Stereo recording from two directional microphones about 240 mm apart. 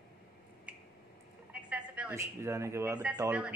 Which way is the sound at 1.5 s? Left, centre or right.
Centre.